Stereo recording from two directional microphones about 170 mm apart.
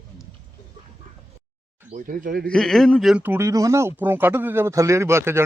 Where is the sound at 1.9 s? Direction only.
50° right (ahead or behind).